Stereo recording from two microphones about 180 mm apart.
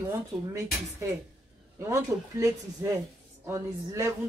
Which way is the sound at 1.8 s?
15° right (ahead or behind).